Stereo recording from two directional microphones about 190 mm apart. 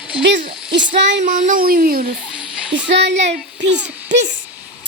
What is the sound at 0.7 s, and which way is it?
Speech, 70° right (ahead or behind).